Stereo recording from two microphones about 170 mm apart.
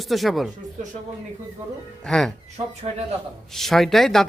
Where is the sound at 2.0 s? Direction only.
5° left (ahead or behind).